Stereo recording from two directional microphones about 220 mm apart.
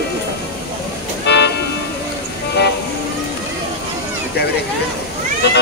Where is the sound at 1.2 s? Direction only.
50° left (ahead or behind).